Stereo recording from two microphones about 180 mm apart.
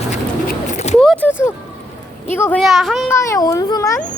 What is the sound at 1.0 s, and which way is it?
Speech, 5° left (ahead or behind).